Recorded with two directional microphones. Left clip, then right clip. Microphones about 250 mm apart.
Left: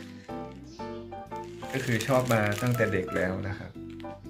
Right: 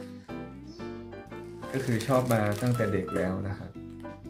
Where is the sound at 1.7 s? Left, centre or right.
Centre.